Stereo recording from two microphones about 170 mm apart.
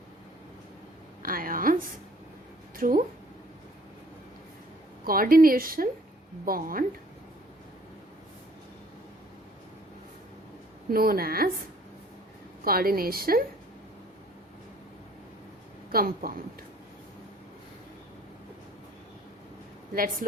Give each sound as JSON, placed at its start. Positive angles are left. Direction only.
{"t": 1.2, "sound": "a woman's voice", "side_deg": -55}
{"t": 2.7, "sound": "speech", "side_deg": -55}
{"t": 5.0, "sound": "a woman's voice", "side_deg": -60}
{"t": 10.9, "sound": "a woman's voice", "side_deg": -60}
{"t": 12.6, "sound": "a woman's voice", "side_deg": -60}
{"t": 15.9, "sound": "a woman's voice", "side_deg": -60}